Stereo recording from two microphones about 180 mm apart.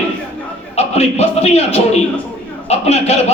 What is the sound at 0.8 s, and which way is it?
A man's voice, 35° left (ahead or behind).